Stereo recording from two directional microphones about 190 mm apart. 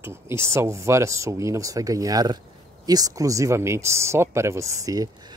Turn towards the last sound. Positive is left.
turn(degrees=-20)  # may be behind; listen again after turning